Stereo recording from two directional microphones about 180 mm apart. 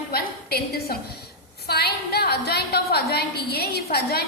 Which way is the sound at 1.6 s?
65° left (ahead or behind).